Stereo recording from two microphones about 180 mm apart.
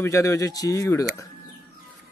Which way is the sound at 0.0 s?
15° left (ahead or behind).